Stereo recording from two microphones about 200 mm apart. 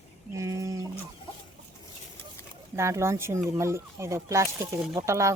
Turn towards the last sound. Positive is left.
turn(degrees=-15)  # may be behind; listen again after turning